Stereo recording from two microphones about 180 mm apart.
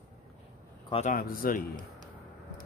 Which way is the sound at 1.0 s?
50° left (ahead or behind).